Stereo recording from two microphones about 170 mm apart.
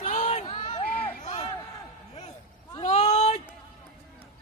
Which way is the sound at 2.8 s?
40° left (ahead or behind).